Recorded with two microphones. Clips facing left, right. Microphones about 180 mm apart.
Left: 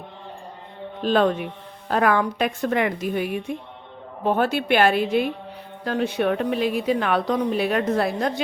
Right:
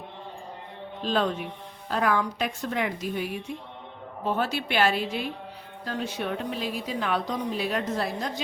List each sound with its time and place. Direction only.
1.0 s a woman's voice: 60° left (ahead or behind)